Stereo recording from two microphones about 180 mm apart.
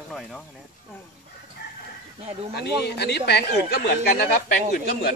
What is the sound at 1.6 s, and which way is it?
Chicken, 65° left (ahead or behind).